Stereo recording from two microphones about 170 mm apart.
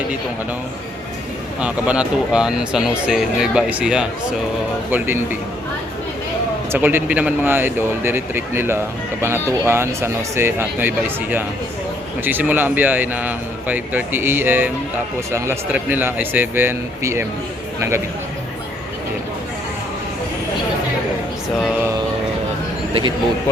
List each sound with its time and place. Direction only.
1.6 s a man's voice: 5° right (ahead or behind)
6.7 s a man's voice: 10° right (ahead or behind)